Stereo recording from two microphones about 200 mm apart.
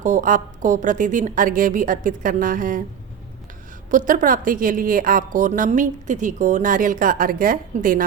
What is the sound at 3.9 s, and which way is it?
A woman's voice, 40° right (ahead or behind).